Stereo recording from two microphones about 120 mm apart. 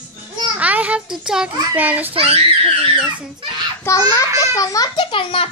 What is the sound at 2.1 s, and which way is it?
Speech, 55° right (ahead or behind).